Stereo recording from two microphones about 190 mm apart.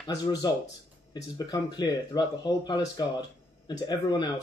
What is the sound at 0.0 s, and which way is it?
Speech, 20° left (ahead or behind).